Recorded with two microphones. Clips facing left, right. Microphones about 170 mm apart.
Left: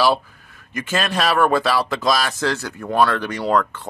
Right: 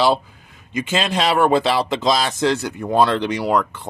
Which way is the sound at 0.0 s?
20° right (ahead or behind).